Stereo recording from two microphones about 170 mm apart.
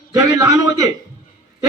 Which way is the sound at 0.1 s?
20° right (ahead or behind).